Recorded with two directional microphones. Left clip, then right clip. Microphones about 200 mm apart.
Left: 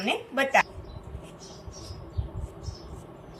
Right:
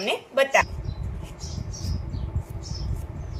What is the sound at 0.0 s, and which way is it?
Speech, 25° right (ahead or behind).